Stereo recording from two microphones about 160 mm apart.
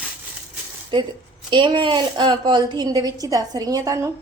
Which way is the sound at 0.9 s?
30° right (ahead or behind).